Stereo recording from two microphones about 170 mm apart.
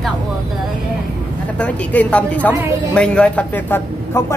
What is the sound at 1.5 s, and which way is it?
A man's voice, 10° left (ahead or behind).